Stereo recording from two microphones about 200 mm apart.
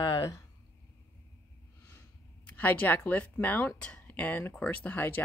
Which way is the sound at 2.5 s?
10° left (ahead or behind).